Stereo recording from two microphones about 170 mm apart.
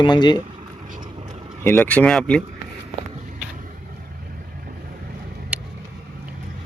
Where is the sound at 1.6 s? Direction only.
10° left (ahead or behind).